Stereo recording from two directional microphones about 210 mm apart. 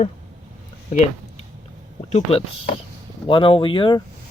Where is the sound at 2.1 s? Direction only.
30° left (ahead or behind).